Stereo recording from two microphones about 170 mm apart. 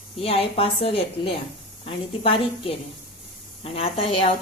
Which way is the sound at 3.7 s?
35° left (ahead or behind).